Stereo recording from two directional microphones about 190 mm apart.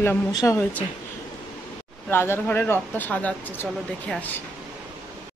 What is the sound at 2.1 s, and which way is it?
Speech, 10° left (ahead or behind).